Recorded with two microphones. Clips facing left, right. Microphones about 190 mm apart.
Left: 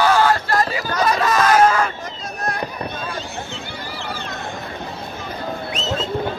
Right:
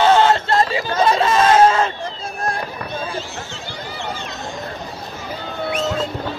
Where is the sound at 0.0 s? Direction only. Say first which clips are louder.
Right 2 dB; 25° right (ahead or behind).